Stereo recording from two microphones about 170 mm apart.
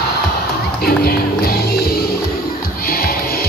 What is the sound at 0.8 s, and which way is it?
Music, 60° left (ahead or behind).